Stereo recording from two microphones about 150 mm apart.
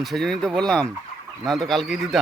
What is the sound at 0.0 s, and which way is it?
Speech, centre (ahead or behind).